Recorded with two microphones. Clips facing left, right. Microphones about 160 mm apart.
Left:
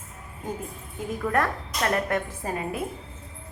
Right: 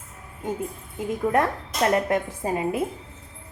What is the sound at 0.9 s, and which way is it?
A woman's voice, 25° right (ahead or behind).